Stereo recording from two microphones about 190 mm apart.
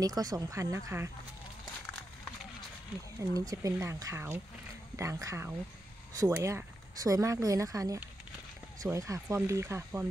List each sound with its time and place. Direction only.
0.0 s speech: 20° right (ahead or behind)
3.2 s speech: 15° right (ahead or behind)